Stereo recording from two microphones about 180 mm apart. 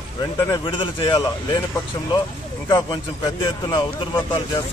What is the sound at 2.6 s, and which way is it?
Speech, 25° left (ahead or behind).